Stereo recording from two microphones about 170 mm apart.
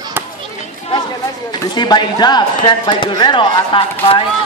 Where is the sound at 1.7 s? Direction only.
25° left (ahead or behind).